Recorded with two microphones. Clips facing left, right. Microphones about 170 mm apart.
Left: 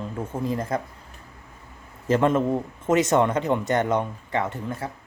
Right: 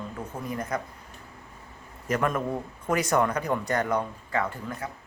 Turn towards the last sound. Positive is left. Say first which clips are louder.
# left 3 dB
turn(degrees=25)  # may be behind; listen again after turning